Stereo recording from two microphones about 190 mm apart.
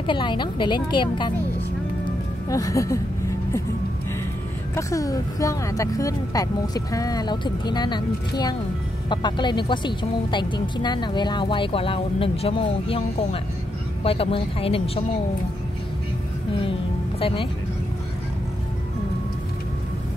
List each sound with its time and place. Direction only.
0.0 s a woman's voice: 25° left (ahead or behind)
2.5 s speech: 15° left (ahead or behind)
4.7 s a woman's voice: 15° left (ahead or behind)